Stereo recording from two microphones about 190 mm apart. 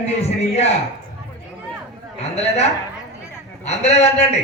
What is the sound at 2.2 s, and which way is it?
A man's voice, 35° left (ahead or behind).